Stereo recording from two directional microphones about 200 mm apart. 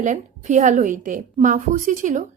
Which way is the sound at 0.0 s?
35° right (ahead or behind).